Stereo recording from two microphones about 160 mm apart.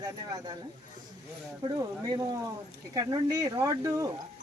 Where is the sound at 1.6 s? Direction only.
25° right (ahead or behind).